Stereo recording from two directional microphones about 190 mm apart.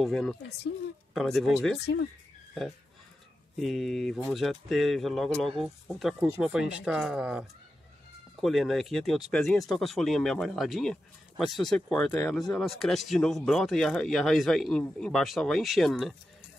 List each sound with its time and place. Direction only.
0.0 s speech: 5° left (ahead or behind)
1.9 s speech: 70° left (ahead or behind)
3.5 s speech: centre (ahead or behind)